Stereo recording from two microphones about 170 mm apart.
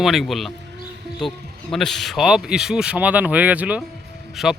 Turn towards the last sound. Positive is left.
turn(degrees=0)  # may be behind; listen again after turning